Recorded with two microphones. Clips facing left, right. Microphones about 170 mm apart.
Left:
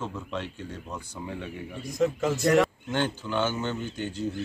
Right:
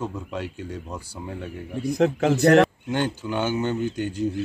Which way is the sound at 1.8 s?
70° right (ahead or behind).